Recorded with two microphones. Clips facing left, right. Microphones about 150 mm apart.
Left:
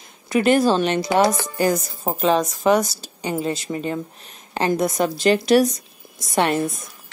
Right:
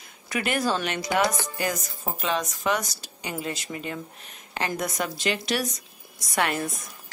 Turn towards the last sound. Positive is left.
turn(degrees=25)  # may be behind; listen again after turning